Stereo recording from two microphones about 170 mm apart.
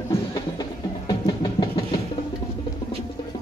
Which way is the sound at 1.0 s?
25° left (ahead or behind).